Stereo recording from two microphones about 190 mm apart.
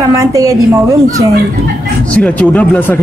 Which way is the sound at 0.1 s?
15° right (ahead or behind).